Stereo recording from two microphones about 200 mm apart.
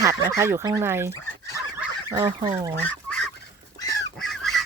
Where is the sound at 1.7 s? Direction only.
10° right (ahead or behind).